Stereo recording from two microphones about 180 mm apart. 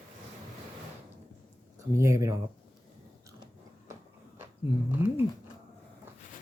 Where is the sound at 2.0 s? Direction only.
15° right (ahead or behind).